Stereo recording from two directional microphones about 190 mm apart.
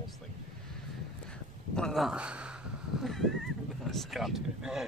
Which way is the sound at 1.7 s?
Centre (ahead or behind).